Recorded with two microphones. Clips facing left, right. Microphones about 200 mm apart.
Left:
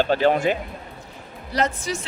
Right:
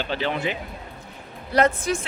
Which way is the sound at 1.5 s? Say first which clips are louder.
Right 4 dB; 55° right (ahead or behind).